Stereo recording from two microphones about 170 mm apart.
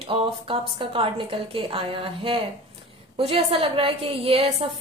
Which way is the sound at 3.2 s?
30° right (ahead or behind).